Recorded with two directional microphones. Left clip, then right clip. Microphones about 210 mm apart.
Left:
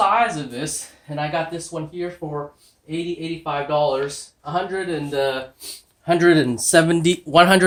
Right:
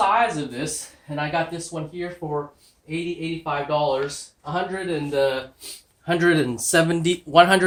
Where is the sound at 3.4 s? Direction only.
35° left (ahead or behind).